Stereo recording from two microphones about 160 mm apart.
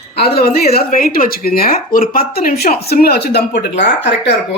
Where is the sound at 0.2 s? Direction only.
75° left (ahead or behind); by 4.3 s 90° left.